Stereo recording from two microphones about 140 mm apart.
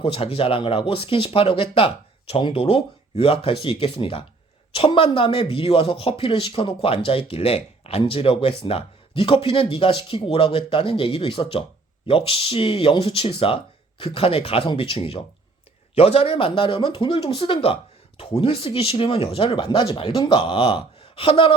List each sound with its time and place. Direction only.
0.0 s speech: 40° left (ahead or behind)